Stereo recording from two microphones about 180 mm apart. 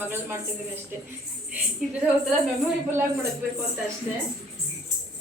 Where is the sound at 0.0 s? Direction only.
15° right (ahead or behind).